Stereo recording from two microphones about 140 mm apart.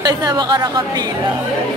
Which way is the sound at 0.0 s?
30° right (ahead or behind).